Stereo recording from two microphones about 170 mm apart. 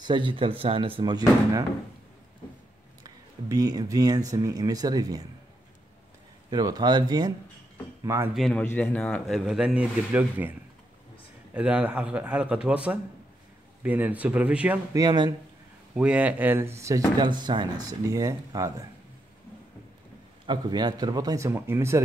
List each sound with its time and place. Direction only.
0.0 s speech: 30° right (ahead or behind)
3.0 s speech: 20° right (ahead or behind)
6.5 s speech: 25° right (ahead or behind)
8.4 s speech: 5° left (ahead or behind)
11.5 s speech: 10° right (ahead or behind)
15.0 s speech: 25° right (ahead or behind)
15.9 s speech: 5° right (ahead or behind)
20.4 s speech: 25° right (ahead or behind)